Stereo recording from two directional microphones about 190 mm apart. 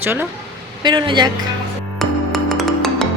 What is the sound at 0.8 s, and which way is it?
Speech, 25° right (ahead or behind).